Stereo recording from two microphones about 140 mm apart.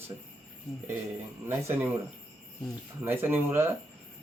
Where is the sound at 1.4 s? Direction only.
15° right (ahead or behind).